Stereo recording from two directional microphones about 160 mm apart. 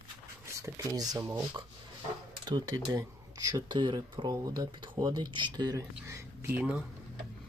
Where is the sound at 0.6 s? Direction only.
20° right (ahead or behind).